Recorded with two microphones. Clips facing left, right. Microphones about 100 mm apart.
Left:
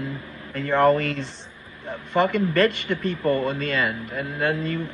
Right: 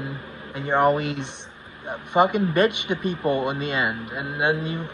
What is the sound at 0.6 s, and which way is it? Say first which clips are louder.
Speech: left 1 dB; 20° right (ahead or behind).